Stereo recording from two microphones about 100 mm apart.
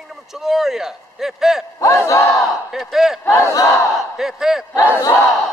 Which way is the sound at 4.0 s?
5° right (ahead or behind).